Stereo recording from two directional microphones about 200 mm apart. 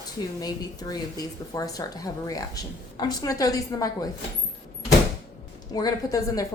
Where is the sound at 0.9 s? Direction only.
15° left (ahead or behind).